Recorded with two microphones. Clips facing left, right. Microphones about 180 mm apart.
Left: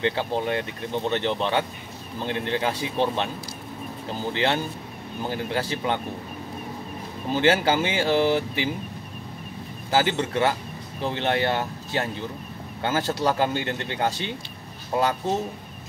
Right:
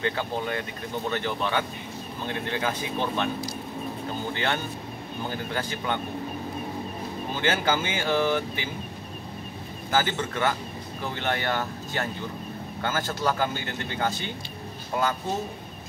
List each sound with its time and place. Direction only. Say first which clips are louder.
0.0 s speech: left 3 dB; 30° left (ahead or behind)
4.3 s speech: left 6 dB; 30° left (ahead or behind)
7.3 s speech: left 5 dB; 30° left (ahead or behind)
9.8 s speech: left 3 dB; 25° left (ahead or behind)